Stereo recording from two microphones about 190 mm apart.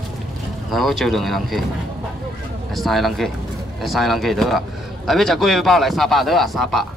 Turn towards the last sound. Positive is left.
turn(degrees=0)  # may be behind; listen again after turning